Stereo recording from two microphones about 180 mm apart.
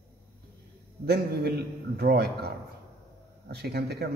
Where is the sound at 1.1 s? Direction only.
60° right (ahead or behind).